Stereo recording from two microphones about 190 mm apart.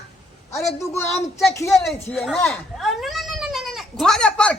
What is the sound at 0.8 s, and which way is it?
Speech, 15° left (ahead or behind).